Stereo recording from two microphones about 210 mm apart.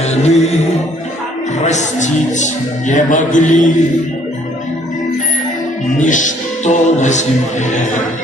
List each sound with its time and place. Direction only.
0.0 s music: 30° left (ahead or behind)
1.6 s speech: 35° left (ahead or behind)
6.0 s speech: 35° left (ahead or behind)